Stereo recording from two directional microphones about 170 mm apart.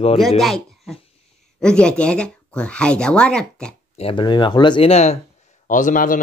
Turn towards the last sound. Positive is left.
turn(degrees=50)  # may be behind; listen again after turning